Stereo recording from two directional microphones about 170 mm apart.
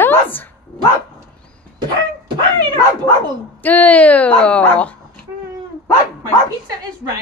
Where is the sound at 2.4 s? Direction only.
25° right (ahead or behind).